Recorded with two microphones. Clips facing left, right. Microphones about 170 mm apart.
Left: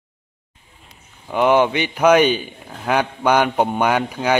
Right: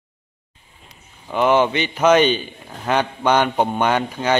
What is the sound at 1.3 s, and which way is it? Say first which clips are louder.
A man's voice: left 1 dB; 10° left (ahead or behind).